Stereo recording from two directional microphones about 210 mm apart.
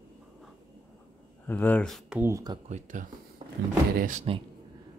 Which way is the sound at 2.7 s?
40° right (ahead or behind).